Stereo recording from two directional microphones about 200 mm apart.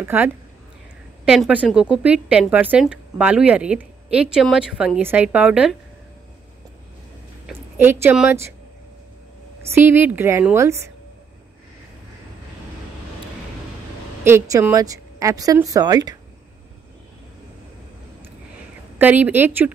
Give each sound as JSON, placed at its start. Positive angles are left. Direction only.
{"t": 0.1, "sound": "speech", "side_deg": -10}
{"t": 7.4, "sound": "a woman's voice", "side_deg": -10}
{"t": 9.8, "sound": "speech", "side_deg": -10}
{"t": 14.2, "sound": "speech", "side_deg": -10}
{"t": 18.9, "sound": "speech", "side_deg": -10}